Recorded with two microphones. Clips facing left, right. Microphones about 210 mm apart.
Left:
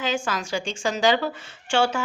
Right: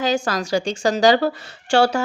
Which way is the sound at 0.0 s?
40° right (ahead or behind).